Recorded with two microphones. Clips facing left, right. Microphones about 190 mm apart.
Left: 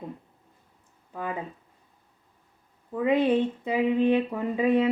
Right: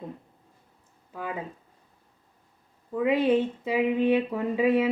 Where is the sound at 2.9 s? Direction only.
10° right (ahead or behind).